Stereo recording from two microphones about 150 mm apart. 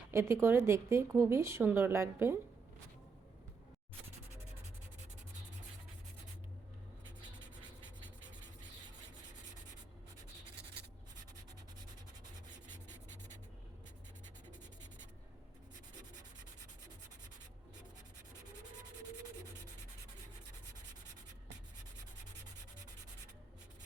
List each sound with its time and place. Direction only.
0.1 s speech: 15° right (ahead or behind)